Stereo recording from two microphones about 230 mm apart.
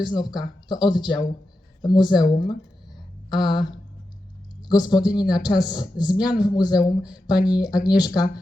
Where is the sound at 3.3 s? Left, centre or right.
Centre.